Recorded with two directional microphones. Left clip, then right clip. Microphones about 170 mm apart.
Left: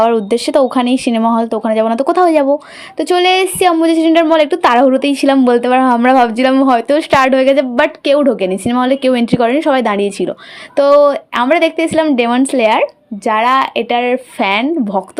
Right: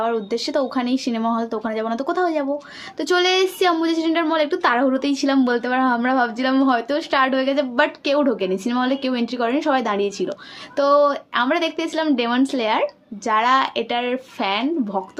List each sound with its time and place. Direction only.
0.0 s a woman's voice: 40° left (ahead or behind)
3.0 s a woman's voice: 35° left (ahead or behind)